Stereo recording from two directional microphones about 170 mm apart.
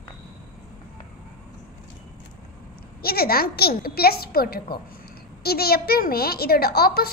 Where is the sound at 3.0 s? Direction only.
65° left (ahead or behind).